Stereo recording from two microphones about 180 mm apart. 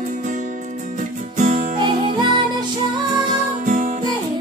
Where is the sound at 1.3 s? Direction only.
45° right (ahead or behind).